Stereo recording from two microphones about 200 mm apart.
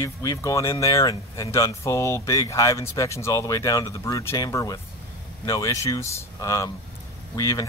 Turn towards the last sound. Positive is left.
turn(degrees=15)  # may be behind; listen again after turning